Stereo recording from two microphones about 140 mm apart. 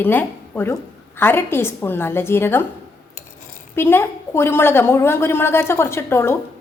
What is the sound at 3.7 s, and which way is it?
A woman's voice, 15° left (ahead or behind).